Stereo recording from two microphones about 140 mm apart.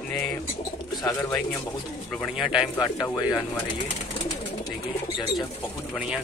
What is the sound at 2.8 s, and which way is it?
Speech, 30° left (ahead or behind).